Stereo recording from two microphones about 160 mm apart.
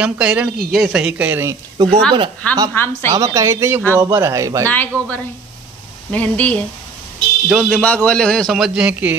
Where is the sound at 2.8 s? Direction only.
15° left (ahead or behind).